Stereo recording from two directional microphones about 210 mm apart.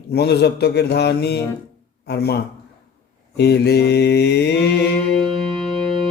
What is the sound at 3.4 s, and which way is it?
Mantra, 50° left (ahead or behind).